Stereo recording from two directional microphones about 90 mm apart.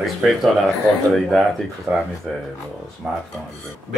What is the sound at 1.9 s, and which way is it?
Speech, 20° right (ahead or behind).